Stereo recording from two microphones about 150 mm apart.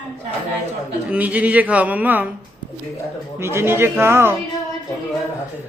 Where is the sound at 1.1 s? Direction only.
10° right (ahead or behind).